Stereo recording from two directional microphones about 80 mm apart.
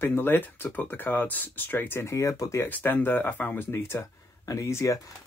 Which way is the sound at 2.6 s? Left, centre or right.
Left.